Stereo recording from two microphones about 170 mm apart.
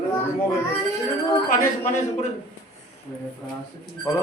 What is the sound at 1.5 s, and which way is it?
Speech, 45° left (ahead or behind).